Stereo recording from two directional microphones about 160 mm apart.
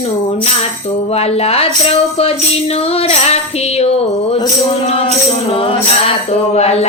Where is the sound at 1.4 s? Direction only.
40° left (ahead or behind).